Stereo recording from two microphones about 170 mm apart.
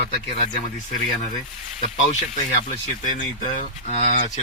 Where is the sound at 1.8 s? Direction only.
45° left (ahead or behind).